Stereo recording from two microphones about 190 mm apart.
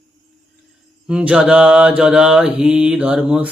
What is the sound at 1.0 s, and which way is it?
Mantra, 5° right (ahead or behind).